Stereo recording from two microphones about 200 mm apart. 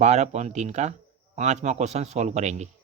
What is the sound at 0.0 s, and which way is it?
Speech, 35° right (ahead or behind).